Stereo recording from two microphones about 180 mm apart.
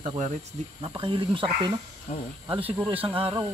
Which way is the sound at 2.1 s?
45° left (ahead or behind).